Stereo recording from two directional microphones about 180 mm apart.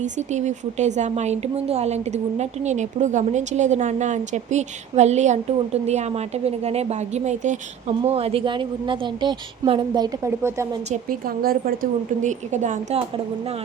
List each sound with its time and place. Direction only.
0.0 s speech: 40° right (ahead or behind); by 10.7 s 15° right (ahead or behind)
10.9 s a woman's voice: 50° right (ahead or behind)